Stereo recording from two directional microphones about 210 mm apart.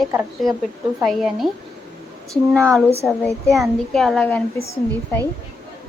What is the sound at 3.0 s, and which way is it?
Speech, 5° right (ahead or behind).